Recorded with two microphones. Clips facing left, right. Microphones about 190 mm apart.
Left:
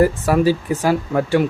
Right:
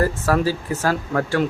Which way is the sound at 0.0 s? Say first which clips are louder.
Left 4 dB; 15° left (ahead or behind).